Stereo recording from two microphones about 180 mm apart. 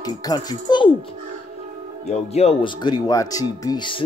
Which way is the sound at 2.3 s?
35° left (ahead or behind).